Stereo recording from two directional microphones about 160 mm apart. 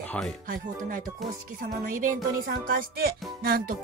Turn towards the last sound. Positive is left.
turn(degrees=-65)  # may be behind; listen again after turning